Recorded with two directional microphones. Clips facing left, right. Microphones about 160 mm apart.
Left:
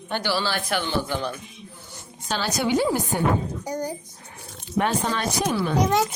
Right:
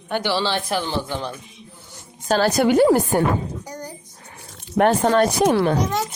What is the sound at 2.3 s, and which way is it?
Speech, 55° right (ahead or behind).